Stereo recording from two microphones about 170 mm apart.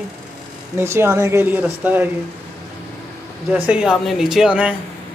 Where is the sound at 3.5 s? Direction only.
5° right (ahead or behind).